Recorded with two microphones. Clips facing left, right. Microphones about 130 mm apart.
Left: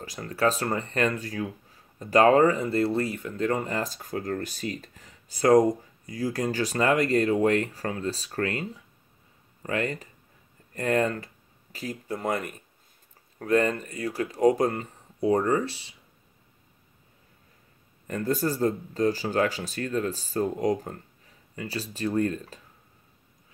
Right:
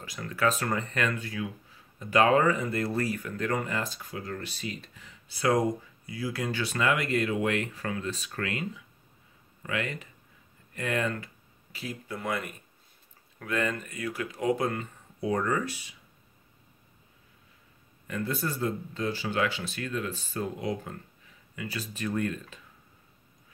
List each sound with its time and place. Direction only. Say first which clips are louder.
0.0 s speech: left 3 dB; 35° left (ahead or behind)
18.0 s speech: left 5 dB; 40° left (ahead or behind)